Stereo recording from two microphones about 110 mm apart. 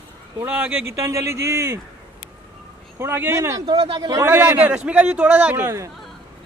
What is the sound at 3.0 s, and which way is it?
A man's voice, 20° right (ahead or behind).